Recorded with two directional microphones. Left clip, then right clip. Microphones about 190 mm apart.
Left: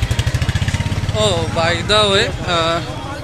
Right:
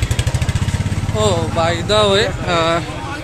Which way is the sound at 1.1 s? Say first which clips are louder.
Even; 15° right (ahead or behind).